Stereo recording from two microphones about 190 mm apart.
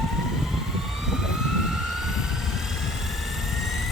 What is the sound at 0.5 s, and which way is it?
Vehicle, centre (ahead or behind).